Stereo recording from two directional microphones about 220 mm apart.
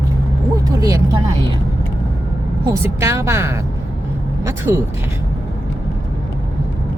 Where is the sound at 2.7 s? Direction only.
10° right (ahead or behind).